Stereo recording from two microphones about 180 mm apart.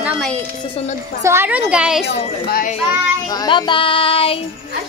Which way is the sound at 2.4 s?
55° left (ahead or behind).